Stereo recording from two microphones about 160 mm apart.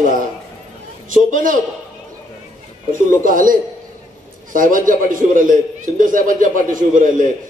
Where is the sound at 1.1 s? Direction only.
55° right (ahead or behind).